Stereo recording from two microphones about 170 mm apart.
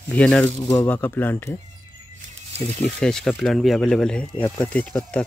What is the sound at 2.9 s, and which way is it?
Speech, 5° left (ahead or behind).